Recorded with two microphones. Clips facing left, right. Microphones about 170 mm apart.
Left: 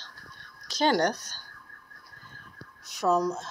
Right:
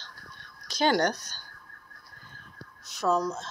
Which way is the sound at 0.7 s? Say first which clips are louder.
Even; 35° left (ahead or behind).